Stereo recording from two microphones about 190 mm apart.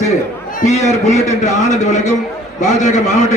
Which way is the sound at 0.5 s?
40° left (ahead or behind).